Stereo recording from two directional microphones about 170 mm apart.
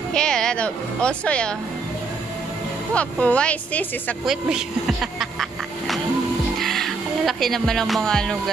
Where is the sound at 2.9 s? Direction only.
5° left (ahead or behind).